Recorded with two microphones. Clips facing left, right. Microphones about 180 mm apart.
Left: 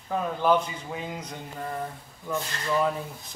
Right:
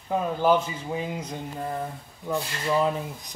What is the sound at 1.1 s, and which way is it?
Speech, 10° right (ahead or behind).